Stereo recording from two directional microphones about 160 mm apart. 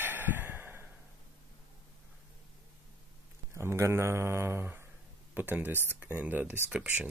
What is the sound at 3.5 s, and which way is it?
Speech, 15° right (ahead or behind).